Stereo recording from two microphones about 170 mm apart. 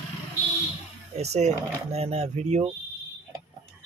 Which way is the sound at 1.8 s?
40° right (ahead or behind).